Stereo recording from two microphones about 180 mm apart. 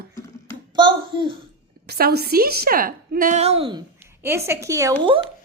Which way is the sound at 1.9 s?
60° right (ahead or behind).